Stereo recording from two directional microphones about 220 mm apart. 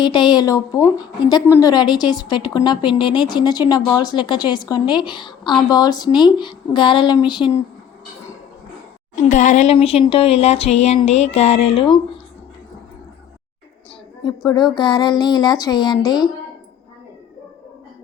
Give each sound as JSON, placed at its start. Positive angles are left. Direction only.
{"t": 0.0, "sound": "a woman's voice", "side_deg": 20}
{"t": 9.3, "sound": "a woman's voice", "side_deg": 35}
{"t": 14.3, "sound": "a woman's voice", "side_deg": 20}